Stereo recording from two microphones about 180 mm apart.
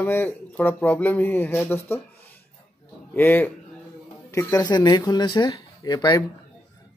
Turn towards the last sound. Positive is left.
turn(degrees=20)  # may be behind; listen again after turning